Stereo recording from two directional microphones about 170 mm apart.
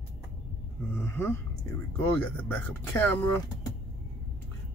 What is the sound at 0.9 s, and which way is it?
Speech, 15° left (ahead or behind).